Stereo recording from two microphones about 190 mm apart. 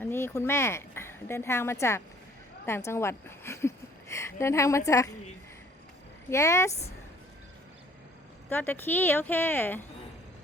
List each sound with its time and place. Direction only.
0.0 s speech: 10° left (ahead or behind)
6.3 s speech: 15° left (ahead or behind)
8.4 s speech: 10° left (ahead or behind)